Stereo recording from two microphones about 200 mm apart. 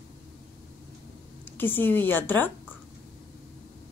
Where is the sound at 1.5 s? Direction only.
10° left (ahead or behind).